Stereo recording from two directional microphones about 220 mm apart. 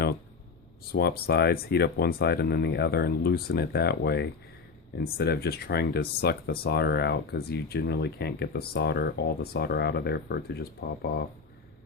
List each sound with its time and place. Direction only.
0.9 s speech: 45° left (ahead or behind)